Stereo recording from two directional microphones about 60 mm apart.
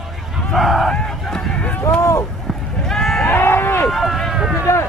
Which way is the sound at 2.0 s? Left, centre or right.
Left.